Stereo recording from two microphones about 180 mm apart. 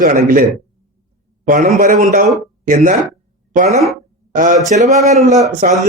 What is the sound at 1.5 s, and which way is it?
Speech, 45° right (ahead or behind).